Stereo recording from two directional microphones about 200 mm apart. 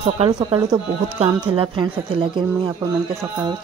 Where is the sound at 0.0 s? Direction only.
25° right (ahead or behind).